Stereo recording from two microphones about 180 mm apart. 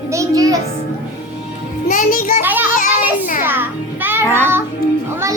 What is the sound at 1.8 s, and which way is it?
Music, 50° left (ahead or behind).